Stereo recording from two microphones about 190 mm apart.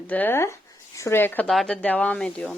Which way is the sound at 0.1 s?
10° left (ahead or behind).